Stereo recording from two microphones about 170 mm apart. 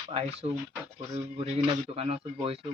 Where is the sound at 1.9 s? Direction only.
35° right (ahead or behind).